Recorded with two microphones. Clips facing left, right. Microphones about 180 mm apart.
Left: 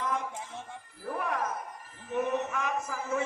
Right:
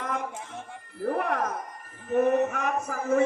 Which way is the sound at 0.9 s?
65° right (ahead or behind).